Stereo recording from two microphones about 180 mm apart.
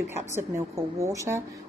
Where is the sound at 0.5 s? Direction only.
15° right (ahead or behind).